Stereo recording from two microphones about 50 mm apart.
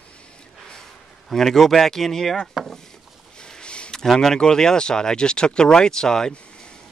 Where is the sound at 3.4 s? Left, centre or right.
Centre.